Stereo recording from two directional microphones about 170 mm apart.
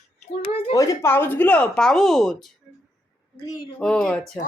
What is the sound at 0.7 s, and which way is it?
Speech, 15° left (ahead or behind).